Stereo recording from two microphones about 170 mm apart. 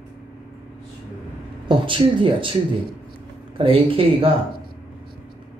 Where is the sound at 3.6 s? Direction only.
30° right (ahead or behind).